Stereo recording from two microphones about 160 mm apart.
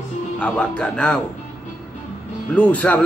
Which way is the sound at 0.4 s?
5° left (ahead or behind).